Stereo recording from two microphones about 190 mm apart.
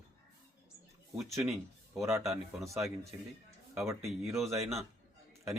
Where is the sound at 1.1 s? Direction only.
15° right (ahead or behind).